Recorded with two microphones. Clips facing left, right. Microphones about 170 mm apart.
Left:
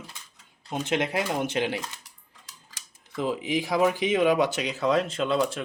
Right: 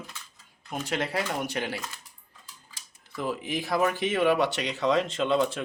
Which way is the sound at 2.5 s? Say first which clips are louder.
Left 1 dB; 80° left.